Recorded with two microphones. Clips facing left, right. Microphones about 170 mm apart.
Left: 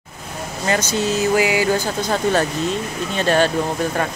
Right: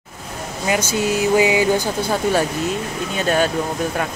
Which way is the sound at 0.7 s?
10° right (ahead or behind).